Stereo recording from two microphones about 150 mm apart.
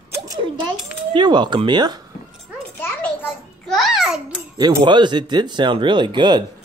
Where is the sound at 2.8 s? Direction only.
10° left (ahead or behind).